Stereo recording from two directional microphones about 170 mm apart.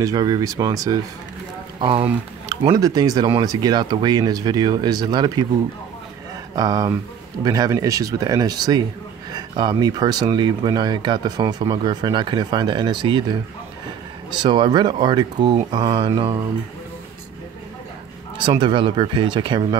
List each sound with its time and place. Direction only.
0.0 s speech: 25° right (ahead or behind)
6.5 s speech: 20° right (ahead or behind)
18.4 s speech: 25° right (ahead or behind)